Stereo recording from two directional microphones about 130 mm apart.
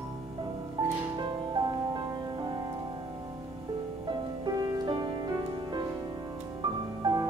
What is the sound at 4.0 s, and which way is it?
Music, 30° right (ahead or behind).